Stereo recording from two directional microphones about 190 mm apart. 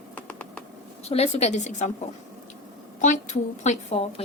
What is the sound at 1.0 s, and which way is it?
Speech, 35° left (ahead or behind).